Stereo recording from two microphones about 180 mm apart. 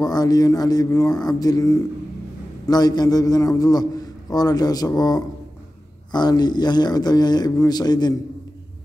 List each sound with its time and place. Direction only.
0.0 s a man's voice: 20° left (ahead or behind)